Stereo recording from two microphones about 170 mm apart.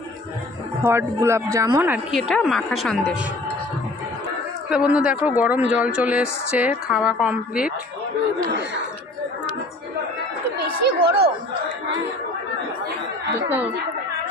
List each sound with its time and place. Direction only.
0.8 s speech: 15° right (ahead or behind)
2.0 s a woman's voice: centre (ahead or behind)
4.6 s a woman's voice: 5° right (ahead or behind)
10.6 s chatter: 70° right (ahead or behind)
13.5 s speech: 10° right (ahead or behind)